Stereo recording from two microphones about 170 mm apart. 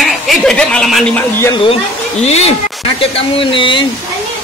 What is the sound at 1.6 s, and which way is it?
Speech, 35° left (ahead or behind).